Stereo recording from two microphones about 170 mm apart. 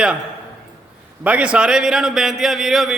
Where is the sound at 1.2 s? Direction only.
5° right (ahead or behind).